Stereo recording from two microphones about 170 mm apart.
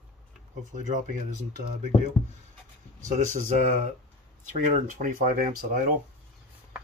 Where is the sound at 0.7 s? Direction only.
45° right (ahead or behind).